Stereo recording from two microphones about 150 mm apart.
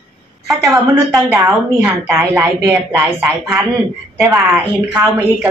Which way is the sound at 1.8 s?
15° right (ahead or behind).